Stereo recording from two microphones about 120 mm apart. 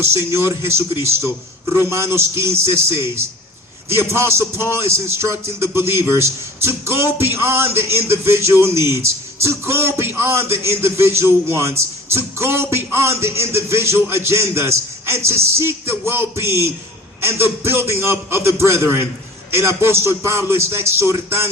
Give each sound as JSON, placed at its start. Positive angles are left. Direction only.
{"t": 0.0, "sound": "a man's voice", "side_deg": -20}
{"t": 3.8, "sound": "a man's voice", "side_deg": -20}